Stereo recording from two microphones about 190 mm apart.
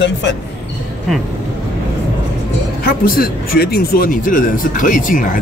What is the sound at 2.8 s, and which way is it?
Speech, 50° left (ahead or behind).